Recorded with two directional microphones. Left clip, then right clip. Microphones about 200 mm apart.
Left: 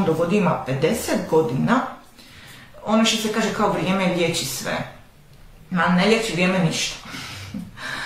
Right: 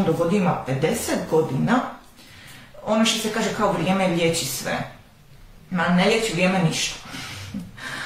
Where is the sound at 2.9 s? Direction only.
15° left (ahead or behind).